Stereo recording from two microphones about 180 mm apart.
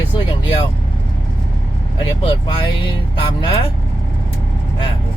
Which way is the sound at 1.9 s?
25° left (ahead or behind).